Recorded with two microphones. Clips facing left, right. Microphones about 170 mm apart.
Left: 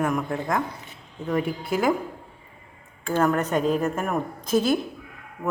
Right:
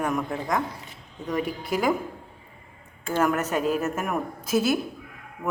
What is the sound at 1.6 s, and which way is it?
Speech, centre (ahead or behind).